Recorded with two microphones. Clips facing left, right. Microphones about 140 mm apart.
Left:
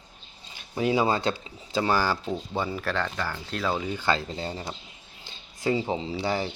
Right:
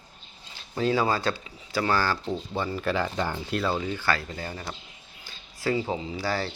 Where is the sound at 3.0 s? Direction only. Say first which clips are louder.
Right 3 dB; 20° right (ahead or behind).